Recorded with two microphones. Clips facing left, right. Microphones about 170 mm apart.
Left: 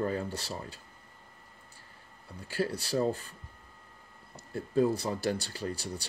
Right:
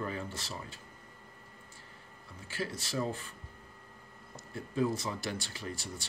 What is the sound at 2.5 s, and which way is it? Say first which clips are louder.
Speech: left 6 dB; 35° left (ahead or behind).